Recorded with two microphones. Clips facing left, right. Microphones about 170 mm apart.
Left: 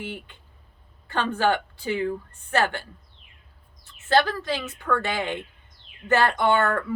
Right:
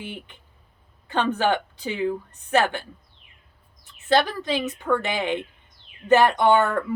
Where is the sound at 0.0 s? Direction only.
20° right (ahead or behind).